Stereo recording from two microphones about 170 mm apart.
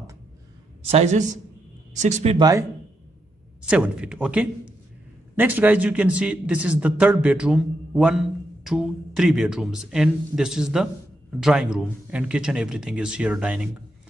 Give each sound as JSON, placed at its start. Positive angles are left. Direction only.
{"t": 0.8, "sound": "a man's voice", "side_deg": -40}
{"t": 2.3, "sound": "speech", "side_deg": -25}
{"t": 3.6, "sound": "a man's voice", "side_deg": -5}